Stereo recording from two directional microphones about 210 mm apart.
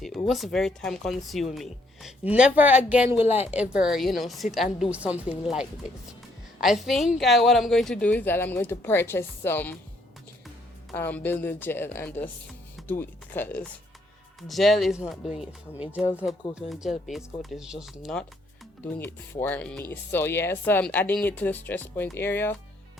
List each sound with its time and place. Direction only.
0.0 s speech: centre (ahead or behind)
3.2 s speech: 30° left (ahead or behind)
3.5 s speech: 5° right (ahead or behind)
6.6 s speech: centre (ahead or behind)
10.9 s speech: 10° left (ahead or behind)